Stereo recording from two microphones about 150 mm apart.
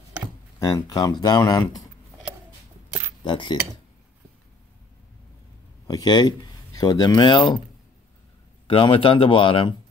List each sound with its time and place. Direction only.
0.6 s speech: 25° left (ahead or behind)
3.3 s speech: 30° left (ahead or behind)
5.9 s speech: 30° left (ahead or behind)
8.6 s speech: 35° left (ahead or behind)